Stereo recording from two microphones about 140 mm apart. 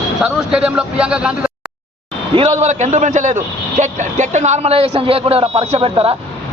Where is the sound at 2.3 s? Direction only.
45° right (ahead or behind).